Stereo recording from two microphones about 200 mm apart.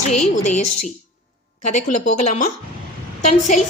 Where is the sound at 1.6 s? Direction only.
35° left (ahead or behind).